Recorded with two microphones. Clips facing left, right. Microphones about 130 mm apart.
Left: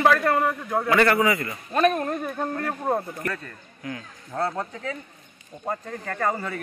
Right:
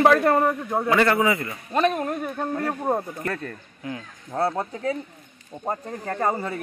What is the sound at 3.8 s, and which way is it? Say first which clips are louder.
Speech: right 1 dB; 25° right (ahead or behind).